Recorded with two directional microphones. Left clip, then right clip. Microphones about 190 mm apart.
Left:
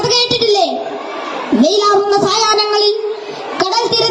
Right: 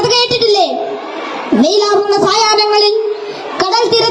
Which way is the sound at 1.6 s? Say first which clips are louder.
Even; 10° right (ahead or behind).